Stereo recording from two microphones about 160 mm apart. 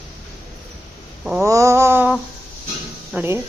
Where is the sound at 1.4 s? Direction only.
20° right (ahead or behind).